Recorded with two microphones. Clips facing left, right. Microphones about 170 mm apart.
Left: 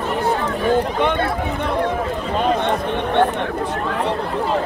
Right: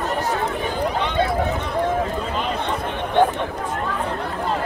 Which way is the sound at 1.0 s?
55° left (ahead or behind).